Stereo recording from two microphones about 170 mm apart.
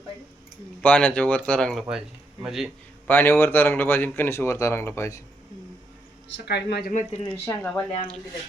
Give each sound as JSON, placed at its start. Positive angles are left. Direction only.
{"t": 0.8, "sound": "speech", "side_deg": 10}
{"t": 3.1, "sound": "speech", "side_deg": 15}
{"t": 6.3, "sound": "speech", "side_deg": 80}
{"t": 6.9, "sound": "speech", "side_deg": 40}
{"t": 7.4, "sound": "speech", "side_deg": 10}